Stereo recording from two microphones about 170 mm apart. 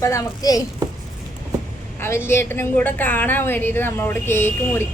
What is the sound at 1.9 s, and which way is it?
A woman's voice, 15° left (ahead or behind).